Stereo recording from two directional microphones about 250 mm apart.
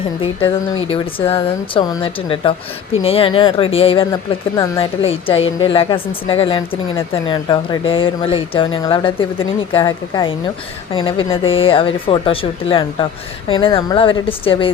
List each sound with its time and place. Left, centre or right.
0.2 s speech: left